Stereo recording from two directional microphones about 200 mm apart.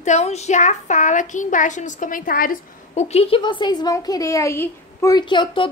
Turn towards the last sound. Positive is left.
turn(degrees=25)  # may be behind; listen again after turning